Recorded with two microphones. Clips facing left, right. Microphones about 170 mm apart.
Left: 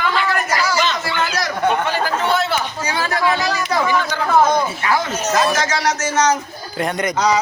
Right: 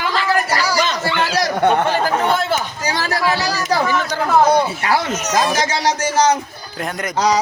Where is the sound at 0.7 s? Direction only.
35° right (ahead or behind).